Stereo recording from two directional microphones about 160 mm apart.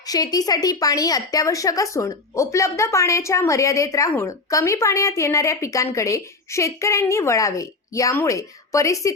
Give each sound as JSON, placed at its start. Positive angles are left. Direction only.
{"t": 0.0, "sound": "a woman's voice", "side_deg": 25}